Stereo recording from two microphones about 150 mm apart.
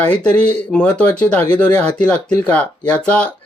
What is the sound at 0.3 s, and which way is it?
Speech, 5° left (ahead or behind).